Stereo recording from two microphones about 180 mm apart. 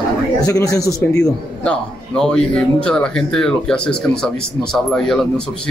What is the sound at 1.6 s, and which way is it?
Speech, 5° left (ahead or behind).